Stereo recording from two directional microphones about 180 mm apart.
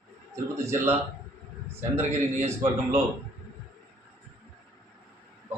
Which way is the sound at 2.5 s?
15° right (ahead or behind).